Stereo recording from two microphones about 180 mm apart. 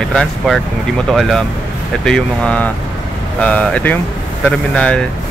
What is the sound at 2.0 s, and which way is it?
Speech, 5° left (ahead or behind).